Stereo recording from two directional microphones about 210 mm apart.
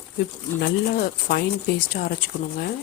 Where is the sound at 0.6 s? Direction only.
45° left (ahead or behind).